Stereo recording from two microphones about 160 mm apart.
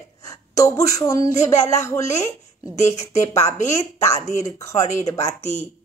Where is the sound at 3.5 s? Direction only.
45° left (ahead or behind).